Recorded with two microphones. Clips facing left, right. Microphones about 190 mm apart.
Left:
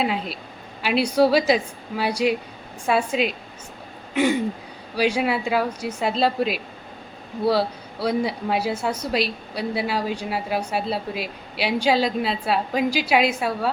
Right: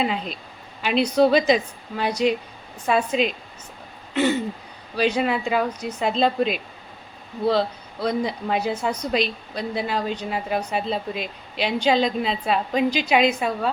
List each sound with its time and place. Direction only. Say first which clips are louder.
0.0 s a woman's voice: even; 5° left (ahead or behind)